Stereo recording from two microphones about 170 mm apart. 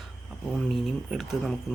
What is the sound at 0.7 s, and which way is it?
Speech, centre (ahead or behind).